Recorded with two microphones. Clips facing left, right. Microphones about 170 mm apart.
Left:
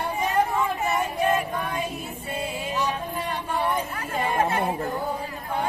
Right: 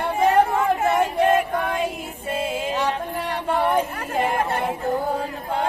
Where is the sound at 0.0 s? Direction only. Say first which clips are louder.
Right 6 dB; 55° right (ahead or behind).